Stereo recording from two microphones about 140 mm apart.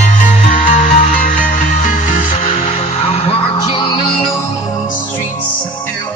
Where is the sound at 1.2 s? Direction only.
65° left (ahead or behind); by 5.9 s 15° left (ahead or behind).